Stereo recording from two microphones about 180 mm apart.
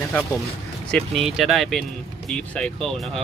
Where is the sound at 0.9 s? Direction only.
Centre (ahead or behind).